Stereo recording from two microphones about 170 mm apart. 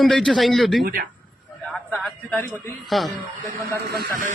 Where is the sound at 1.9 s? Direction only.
Centre (ahead or behind).